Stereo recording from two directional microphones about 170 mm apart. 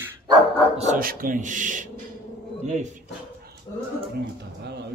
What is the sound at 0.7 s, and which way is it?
Speech, 50° right (ahead or behind).